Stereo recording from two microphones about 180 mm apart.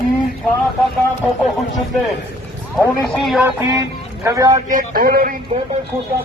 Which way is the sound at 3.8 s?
20° right (ahead or behind).